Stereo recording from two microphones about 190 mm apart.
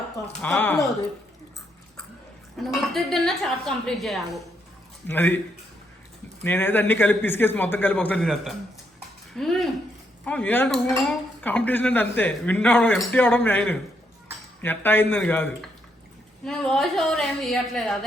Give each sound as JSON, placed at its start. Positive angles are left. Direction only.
{"t": 0.4, "sound": "speech", "side_deg": 10}
{"t": 2.6, "sound": "a woman's voice", "side_deg": 0}
{"t": 6.4, "sound": "a woman's voice", "side_deg": 10}